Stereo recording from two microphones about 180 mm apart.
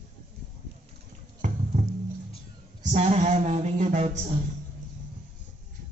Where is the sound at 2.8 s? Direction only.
40° right (ahead or behind).